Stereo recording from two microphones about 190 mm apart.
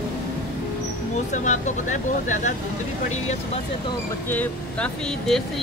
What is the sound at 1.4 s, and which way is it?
Speech, 40° left (ahead or behind).